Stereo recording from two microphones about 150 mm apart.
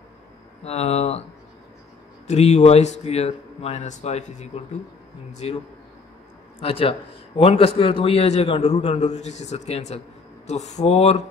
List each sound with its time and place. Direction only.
0.7 s a man's voice: 45° left (ahead or behind)
2.2 s a man's voice: 50° left (ahead or behind)
6.6 s a man's voice: 40° left (ahead or behind)